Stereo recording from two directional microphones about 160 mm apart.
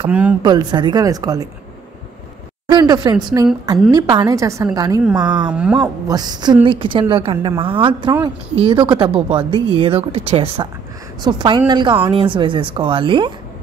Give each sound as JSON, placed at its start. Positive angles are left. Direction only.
{"t": 0.0, "sound": "speech", "side_deg": -10}
{"t": 0.4, "sound": "a woman's voice", "side_deg": -25}
{"t": 2.7, "sound": "a woman's voice", "side_deg": -25}
{"t": 5.5, "sound": "speech", "side_deg": -5}
{"t": 6.0, "sound": "speech", "side_deg": -25}